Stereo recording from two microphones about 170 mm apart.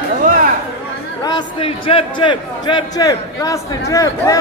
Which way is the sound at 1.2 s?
30° left (ahead or behind).